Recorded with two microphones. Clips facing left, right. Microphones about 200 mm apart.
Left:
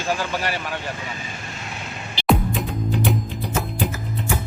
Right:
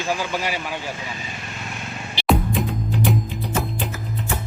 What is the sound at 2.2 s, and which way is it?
Music, centre (ahead or behind).